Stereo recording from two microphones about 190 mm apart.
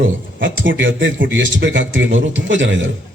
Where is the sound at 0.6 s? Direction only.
80° right.